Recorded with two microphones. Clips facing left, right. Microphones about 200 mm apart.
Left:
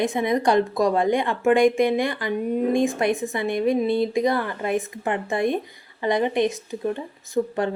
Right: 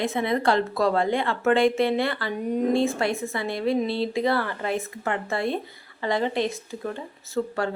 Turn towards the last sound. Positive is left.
turn(degrees=20)  # may be behind; listen again after turning